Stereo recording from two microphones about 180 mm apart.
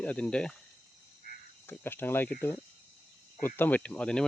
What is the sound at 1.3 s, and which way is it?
Frog, 50° left (ahead or behind).